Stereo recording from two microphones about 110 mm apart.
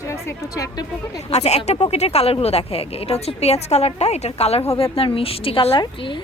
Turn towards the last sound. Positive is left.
turn(degrees=45)  # may be behind; listen again after turning